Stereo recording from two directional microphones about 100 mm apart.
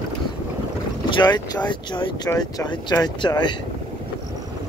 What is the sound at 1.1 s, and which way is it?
Vehicle, 45° left (ahead or behind).